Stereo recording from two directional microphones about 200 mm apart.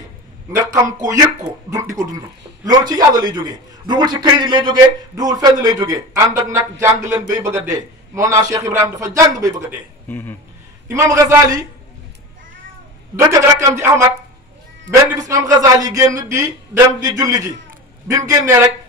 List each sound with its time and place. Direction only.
0.5 s a man's voice: 15° right (ahead or behind)
10.0 s a man's voice: 10° left (ahead or behind)
10.9 s a man's voice: 15° right (ahead or behind)
13.1 s a man's voice: 15° right (ahead or behind)